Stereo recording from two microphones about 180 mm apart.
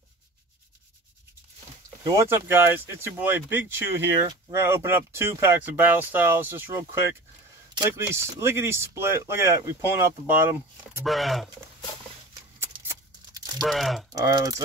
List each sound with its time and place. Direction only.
2.0 s speech: 15° right (ahead or behind)
8.0 s speech: 15° right (ahead or behind)
11.1 s speech: centre (ahead or behind)
13.6 s speech: centre (ahead or behind)
14.3 s speech: 20° right (ahead or behind)